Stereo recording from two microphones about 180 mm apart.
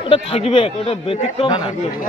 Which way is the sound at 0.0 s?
30° left (ahead or behind).